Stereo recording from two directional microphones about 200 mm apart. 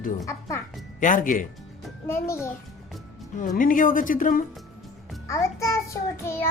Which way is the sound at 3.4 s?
45° left (ahead or behind).